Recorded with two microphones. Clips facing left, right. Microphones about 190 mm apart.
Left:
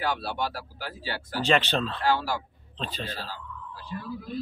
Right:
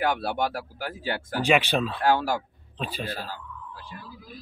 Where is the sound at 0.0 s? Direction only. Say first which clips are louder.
Right 4 dB; 55° right (ahead or behind).